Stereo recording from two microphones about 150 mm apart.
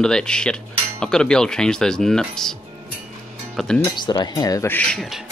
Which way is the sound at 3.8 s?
30° left (ahead or behind).